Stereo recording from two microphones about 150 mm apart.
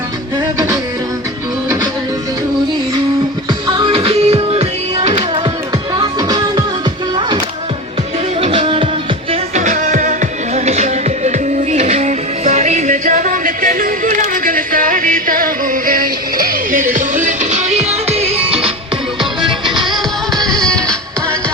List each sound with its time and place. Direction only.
3.7 s music: 30° right (ahead or behind)
6.0 s music: 25° right (ahead or behind)
8.4 s music: 40° right (ahead or behind)
9.3 s music: 55° right (ahead or behind)
20.4 s music: 5° left (ahead or behind)